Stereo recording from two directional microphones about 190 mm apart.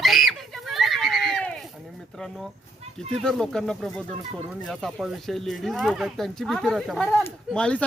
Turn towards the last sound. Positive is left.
turn(degrees=5)  # may be behind; listen again after turning